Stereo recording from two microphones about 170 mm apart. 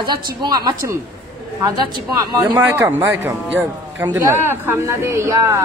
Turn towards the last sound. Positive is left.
turn(degrees=-20)  # may be behind; listen again after turning